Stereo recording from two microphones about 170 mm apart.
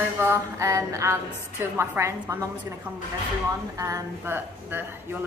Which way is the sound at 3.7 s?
20° right (ahead or behind).